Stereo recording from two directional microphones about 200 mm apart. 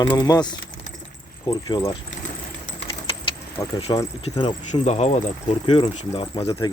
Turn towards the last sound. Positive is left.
turn(degrees=30)  # may be behind; listen again after turning